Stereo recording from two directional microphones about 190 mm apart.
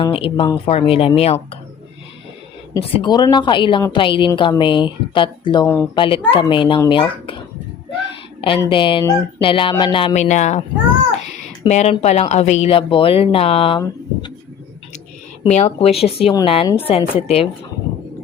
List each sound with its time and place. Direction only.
0.0 s speech: 25° left (ahead or behind)
2.9 s speech: 25° left (ahead or behind)
5.6 s speech: 10° left (ahead or behind)
5.9 s speech: 25° left (ahead or behind)
8.4 s speech: 25° left (ahead or behind)
11.7 s speech: 35° left (ahead or behind)
15.4 s speech: 35° left (ahead or behind)